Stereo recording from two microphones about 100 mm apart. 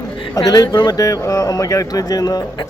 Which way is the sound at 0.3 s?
40° left (ahead or behind).